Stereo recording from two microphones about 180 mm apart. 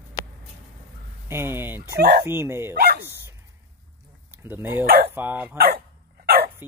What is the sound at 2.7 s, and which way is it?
Speech, 60° right (ahead or behind).